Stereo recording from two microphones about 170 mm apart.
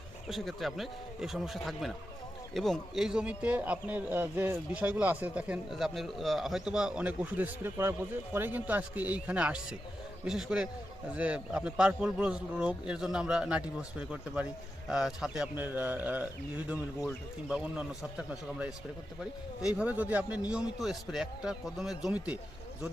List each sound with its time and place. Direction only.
0.3 s a man's voice: centre (ahead or behind)